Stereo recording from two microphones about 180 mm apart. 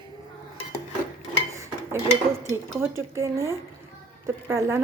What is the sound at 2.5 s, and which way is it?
Speech, 15° right (ahead or behind).